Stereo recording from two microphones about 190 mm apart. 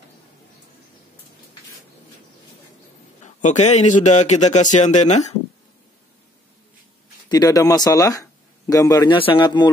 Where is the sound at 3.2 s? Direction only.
40° left (ahead or behind).